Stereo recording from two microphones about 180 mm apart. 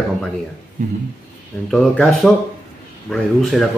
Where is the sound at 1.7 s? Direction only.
Centre (ahead or behind).